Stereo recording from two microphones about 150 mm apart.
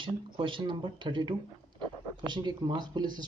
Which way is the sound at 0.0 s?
35° right (ahead or behind).